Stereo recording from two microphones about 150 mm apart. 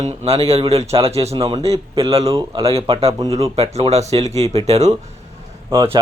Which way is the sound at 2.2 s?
20° right (ahead or behind).